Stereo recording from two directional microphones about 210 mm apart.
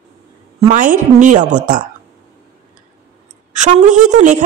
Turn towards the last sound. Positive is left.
turn(degrees=-35)  # may be behind; listen again after turning